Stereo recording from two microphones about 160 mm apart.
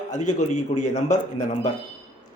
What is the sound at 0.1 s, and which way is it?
A man's voice, 50° left (ahead or behind).